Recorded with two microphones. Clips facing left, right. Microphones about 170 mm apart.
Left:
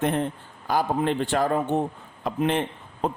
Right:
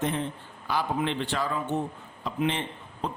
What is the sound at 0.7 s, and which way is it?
A man's voice, 45° left (ahead or behind).